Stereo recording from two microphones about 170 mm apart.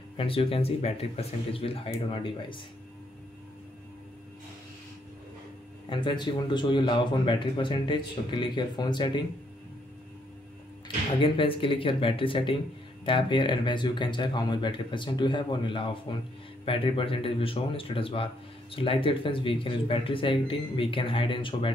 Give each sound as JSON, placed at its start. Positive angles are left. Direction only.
{"t": 0.2, "sound": "speech", "side_deg": 35}
{"t": 5.9, "sound": "speech", "side_deg": 25}
{"t": 11.1, "sound": "speech", "side_deg": 30}